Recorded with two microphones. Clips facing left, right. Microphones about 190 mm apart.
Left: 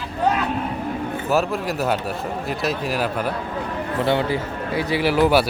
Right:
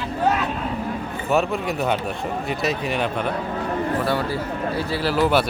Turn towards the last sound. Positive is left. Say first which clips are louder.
# left 2 dB
turn(degrees=10)  # may be behind; listen again after turning